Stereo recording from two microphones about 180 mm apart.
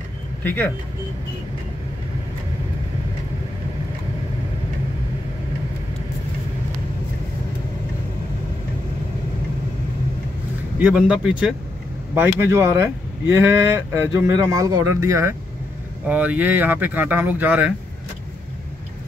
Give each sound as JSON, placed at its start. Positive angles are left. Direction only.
{"t": 0.4, "sound": "speech", "side_deg": 10}
{"t": 10.8, "sound": "speech", "side_deg": -5}
{"t": 12.2, "sound": "speech", "side_deg": -15}